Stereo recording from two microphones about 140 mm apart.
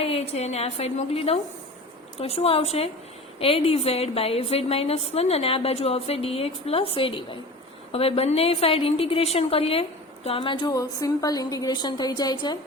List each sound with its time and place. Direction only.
0.0 s a woman's voice: 50° left (ahead or behind); by 12.5 s 30° left (ahead or behind)